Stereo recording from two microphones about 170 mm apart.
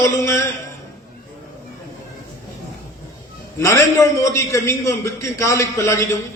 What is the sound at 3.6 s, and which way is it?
A man's voice, 15° left (ahead or behind).